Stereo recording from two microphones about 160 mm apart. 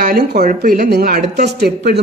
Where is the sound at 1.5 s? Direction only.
85° right.